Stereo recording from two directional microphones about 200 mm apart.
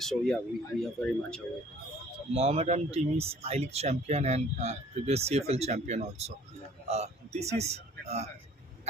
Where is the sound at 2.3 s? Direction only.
30° right (ahead or behind).